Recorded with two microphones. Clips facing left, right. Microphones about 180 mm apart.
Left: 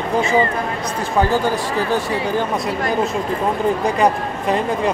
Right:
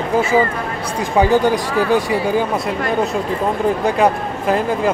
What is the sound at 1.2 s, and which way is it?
Speech, 15° right (ahead or behind).